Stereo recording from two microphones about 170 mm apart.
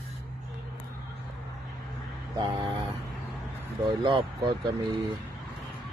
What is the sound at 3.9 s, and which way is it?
Speech, 30° right (ahead or behind).